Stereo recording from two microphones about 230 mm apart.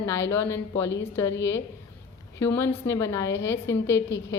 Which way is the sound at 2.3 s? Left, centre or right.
Centre.